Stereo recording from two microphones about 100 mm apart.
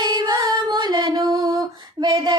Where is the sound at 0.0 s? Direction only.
45° right (ahead or behind).